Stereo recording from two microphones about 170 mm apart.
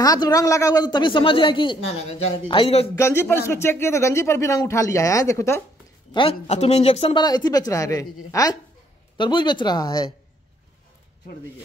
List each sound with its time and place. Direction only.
0.0 s speech: 20° left (ahead or behind)
3.0 s a man's voice: 15° left (ahead or behind)
6.1 s speech: 35° left (ahead or behind)
7.2 s speech: 25° left (ahead or behind)